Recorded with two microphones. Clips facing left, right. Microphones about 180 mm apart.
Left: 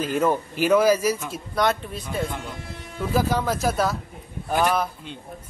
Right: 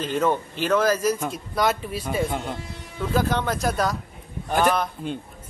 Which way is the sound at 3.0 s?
10° left (ahead or behind).